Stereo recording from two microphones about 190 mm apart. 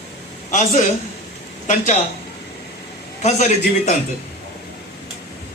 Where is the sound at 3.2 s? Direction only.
40° left (ahead or behind).